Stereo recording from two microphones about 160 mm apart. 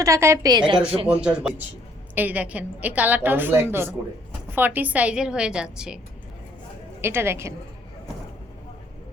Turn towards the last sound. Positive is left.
turn(degrees=-15)  # may be behind; listen again after turning